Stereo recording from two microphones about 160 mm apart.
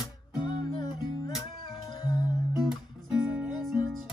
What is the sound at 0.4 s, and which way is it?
Music, 30° left (ahead or behind).